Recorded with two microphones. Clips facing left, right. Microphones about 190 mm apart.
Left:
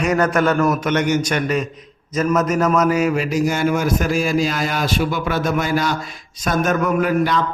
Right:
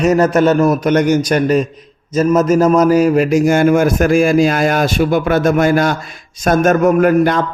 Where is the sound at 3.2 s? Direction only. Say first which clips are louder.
Right 7 dB; 50° right (ahead or behind).